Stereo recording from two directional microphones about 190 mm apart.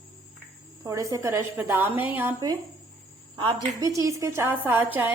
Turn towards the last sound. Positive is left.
turn(degrees=-10)  # may be behind; listen again after turning